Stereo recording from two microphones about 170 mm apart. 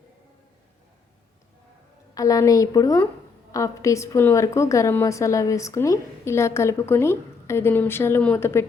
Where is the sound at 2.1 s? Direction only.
20° left (ahead or behind).